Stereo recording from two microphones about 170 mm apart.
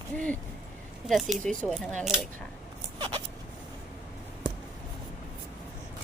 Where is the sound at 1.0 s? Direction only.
Centre (ahead or behind).